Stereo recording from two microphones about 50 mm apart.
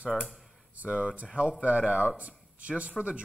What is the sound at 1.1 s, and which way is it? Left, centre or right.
Speech, right.